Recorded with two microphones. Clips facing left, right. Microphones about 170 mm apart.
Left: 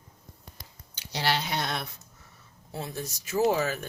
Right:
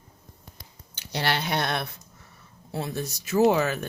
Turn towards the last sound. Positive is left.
turn(degrees=-65)  # may be behind; listen again after turning